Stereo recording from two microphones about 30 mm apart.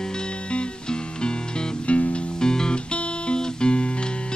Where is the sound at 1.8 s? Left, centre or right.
Left.